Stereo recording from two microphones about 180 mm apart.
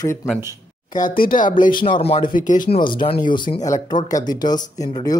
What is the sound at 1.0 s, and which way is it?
Speech, 50° left (ahead or behind).